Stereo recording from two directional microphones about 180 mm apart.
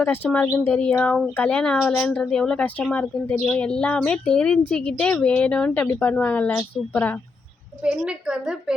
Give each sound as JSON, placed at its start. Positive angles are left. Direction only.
{"t": 0.0, "sound": "a woman's voice", "side_deg": 10}
{"t": 7.9, "sound": "a woman's voice", "side_deg": -5}